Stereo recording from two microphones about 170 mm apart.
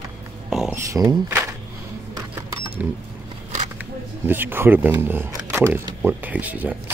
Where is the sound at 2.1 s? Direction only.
15° right (ahead or behind).